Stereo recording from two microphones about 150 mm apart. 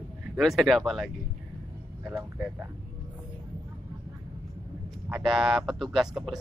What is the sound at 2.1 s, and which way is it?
Speech, 15° right (ahead or behind).